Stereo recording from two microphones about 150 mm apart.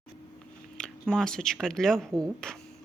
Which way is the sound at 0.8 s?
5° left (ahead or behind).